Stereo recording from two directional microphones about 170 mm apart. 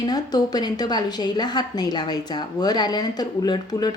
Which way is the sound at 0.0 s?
25° left (ahead or behind).